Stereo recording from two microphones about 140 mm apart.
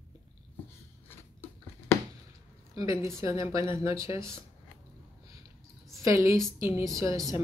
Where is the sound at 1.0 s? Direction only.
15° left (ahead or behind).